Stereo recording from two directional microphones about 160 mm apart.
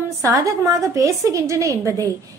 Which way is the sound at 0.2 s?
20° right (ahead or behind).